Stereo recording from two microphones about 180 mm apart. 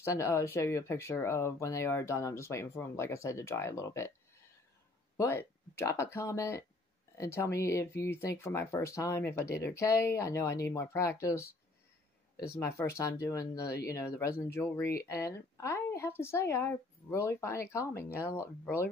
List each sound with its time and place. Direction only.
0.0 s speech: 15° left (ahead or behind)
5.1 s speech: 15° left (ahead or behind)
12.5 s speech: 15° left (ahead or behind)